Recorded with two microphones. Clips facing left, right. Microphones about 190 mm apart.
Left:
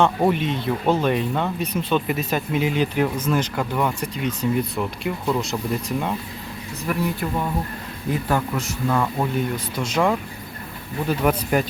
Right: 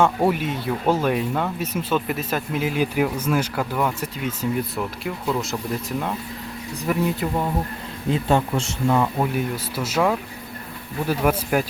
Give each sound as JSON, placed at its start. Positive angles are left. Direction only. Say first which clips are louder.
{"t": 0.0, "sound": "speech", "louder": "even", "side_deg": -5}
{"t": 6.8, "sound": "speech", "louder": "right 2 dB", "side_deg": -20}
{"t": 9.0, "sound": "speech", "louder": "right 1 dB", "side_deg": -10}